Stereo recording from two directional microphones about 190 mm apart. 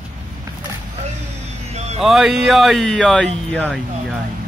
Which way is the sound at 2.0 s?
Centre (ahead or behind).